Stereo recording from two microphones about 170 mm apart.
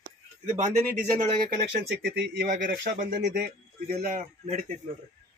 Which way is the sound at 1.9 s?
80° right.